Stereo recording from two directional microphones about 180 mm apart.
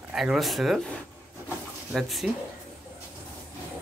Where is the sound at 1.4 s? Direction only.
Centre (ahead or behind).